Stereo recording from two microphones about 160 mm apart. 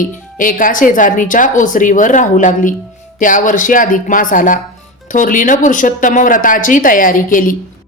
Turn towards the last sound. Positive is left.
turn(degrees=60)  # may be behind; listen again after turning